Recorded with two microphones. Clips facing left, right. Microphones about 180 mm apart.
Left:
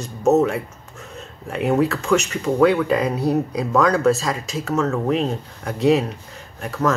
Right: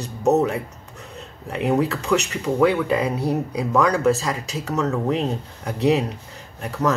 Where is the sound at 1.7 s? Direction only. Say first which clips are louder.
Left 2 dB; 15° right (ahead or behind).